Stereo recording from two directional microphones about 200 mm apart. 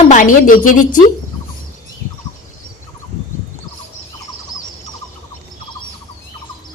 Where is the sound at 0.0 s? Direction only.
40° left (ahead or behind).